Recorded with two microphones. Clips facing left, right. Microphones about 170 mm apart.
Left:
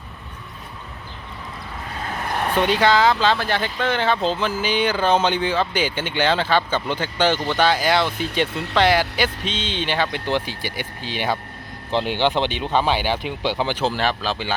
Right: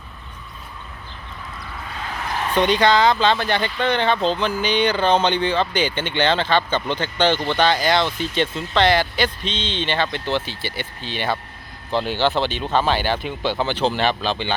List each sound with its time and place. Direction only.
2.3 s vehicle: 55° left (ahead or behind)
2.6 s speech: 5° left (ahead or behind)